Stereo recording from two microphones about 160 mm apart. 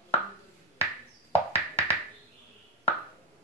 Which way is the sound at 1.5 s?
15° right (ahead or behind).